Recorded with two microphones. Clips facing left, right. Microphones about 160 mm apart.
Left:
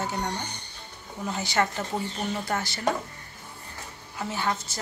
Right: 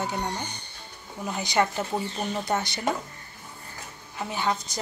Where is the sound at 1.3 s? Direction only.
15° right (ahead or behind).